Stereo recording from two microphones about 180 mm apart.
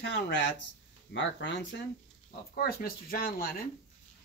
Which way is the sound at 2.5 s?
55° left (ahead or behind).